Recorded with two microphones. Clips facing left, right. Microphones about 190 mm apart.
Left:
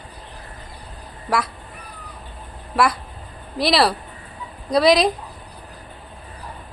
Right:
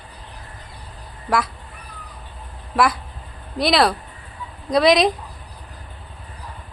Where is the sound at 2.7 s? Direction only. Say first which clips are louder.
Even; centre (ahead or behind).